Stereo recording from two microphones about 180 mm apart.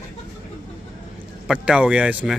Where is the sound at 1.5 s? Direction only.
5° right (ahead or behind).